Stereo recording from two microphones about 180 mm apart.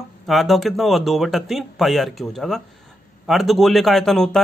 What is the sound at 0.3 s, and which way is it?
A man's voice, centre (ahead or behind).